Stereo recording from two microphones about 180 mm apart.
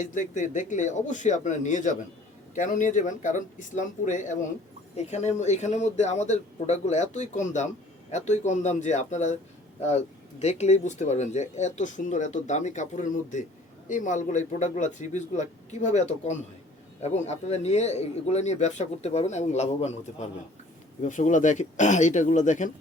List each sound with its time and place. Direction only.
0.0 s a man's voice: 45° left (ahead or behind)
10.4 s a man's voice: 40° left (ahead or behind)